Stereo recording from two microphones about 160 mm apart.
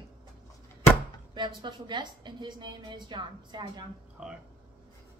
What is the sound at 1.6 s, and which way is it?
A woman's voice, 30° right (ahead or behind).